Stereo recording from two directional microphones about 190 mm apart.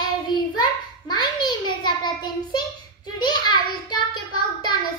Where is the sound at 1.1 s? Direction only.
25° left (ahead or behind).